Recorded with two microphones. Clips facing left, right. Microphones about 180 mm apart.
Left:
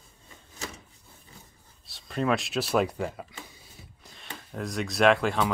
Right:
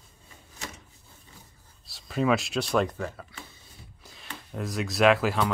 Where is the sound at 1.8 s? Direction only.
Centre (ahead or behind); by 3.2 s 15° left (ahead or behind).